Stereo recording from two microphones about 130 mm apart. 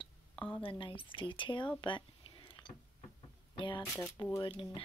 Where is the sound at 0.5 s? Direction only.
40° left (ahead or behind).